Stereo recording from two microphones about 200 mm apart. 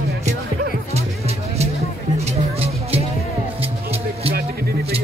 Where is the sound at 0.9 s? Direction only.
30° right (ahead or behind).